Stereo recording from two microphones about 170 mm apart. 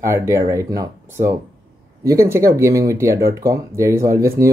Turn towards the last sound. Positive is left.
turn(degrees=-15)  # may be behind; listen again after turning